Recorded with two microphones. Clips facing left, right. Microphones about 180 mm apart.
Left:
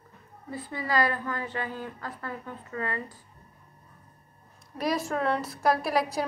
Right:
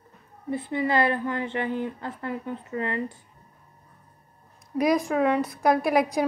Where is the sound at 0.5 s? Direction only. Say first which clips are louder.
Right 6 dB; 20° right (ahead or behind).